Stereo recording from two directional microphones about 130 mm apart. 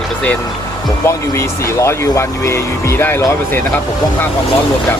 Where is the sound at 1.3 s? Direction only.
20° left (ahead or behind).